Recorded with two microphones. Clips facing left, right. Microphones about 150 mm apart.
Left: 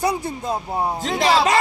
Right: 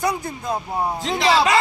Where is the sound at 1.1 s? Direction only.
40° left (ahead or behind).